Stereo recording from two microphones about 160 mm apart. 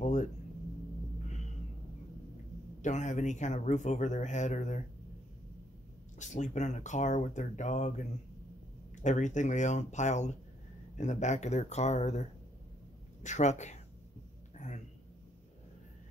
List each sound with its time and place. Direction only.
0.0 s speech: 50° left (ahead or behind)
2.8 s speech: 50° left (ahead or behind)
6.1 s speech: 50° left (ahead or behind)
9.0 s speech: 50° left (ahead or behind)